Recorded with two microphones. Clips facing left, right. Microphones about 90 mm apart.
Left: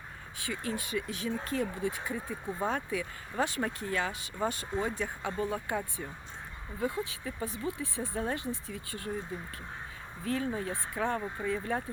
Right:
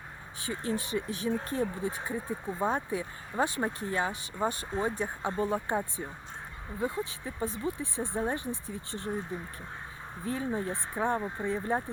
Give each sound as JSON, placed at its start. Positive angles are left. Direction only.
{"t": 0.4, "sound": "speech", "side_deg": -30}
{"t": 10.2, "sound": "speech", "side_deg": -20}